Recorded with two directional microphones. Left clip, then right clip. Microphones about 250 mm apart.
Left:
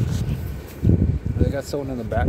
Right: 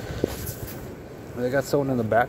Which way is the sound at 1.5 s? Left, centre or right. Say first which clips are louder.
Right 7 dB; centre.